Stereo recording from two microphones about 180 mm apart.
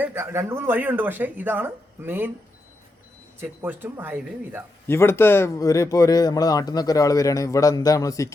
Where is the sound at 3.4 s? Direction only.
10° right (ahead or behind).